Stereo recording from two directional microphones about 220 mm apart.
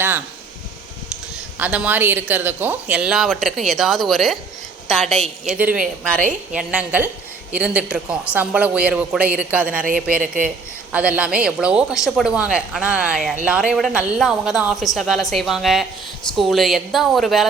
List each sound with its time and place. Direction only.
1.5 s a woman's voice: 5° right (ahead or behind)
10.2 s a man's voice: 40° right (ahead or behind)
10.9 s a woman's voice: 5° right (ahead or behind)